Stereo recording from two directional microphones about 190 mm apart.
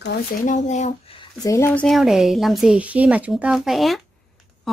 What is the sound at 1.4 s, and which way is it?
Speech, 15° left (ahead or behind).